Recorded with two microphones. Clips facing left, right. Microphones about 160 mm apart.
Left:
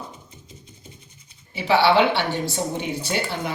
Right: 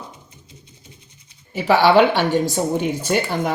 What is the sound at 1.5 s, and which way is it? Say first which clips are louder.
A woman's voice: right 4 dB; 45° right (ahead or behind).